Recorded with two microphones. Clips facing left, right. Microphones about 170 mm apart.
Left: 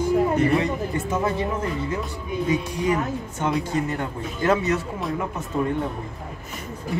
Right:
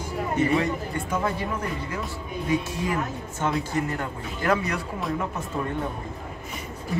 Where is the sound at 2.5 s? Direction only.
20° left (ahead or behind).